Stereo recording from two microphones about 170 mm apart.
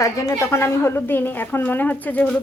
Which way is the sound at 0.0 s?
20° left (ahead or behind).